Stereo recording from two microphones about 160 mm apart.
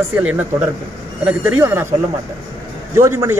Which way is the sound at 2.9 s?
15° right (ahead or behind).